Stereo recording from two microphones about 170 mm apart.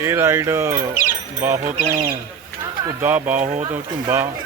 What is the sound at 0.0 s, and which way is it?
Speech, 15° right (ahead or behind).